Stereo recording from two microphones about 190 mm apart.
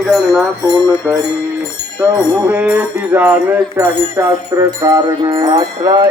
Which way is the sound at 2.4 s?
5° right (ahead or behind).